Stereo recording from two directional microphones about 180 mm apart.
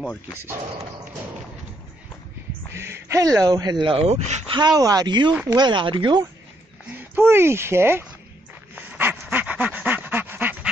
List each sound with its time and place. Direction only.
2.7 s speech: 15° right (ahead or behind)
3.8 s speech: 35° right (ahead or behind)
4.6 s speech: 20° right (ahead or behind)
6.9 s speech: 10° right (ahead or behind)
8.7 s dog: 10° right (ahead or behind)